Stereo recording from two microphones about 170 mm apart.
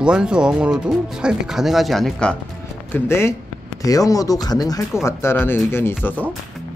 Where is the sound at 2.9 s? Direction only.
15° left (ahead or behind).